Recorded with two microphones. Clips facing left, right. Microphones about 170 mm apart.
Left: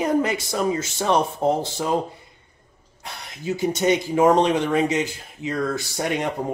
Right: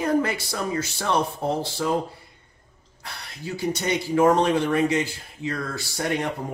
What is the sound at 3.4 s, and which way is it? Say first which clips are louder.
Speech: left 5 dB; 20° left (ahead or behind).